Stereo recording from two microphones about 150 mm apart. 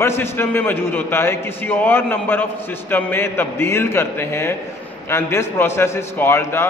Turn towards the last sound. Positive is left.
turn(degrees=15)  # may be behind; listen again after turning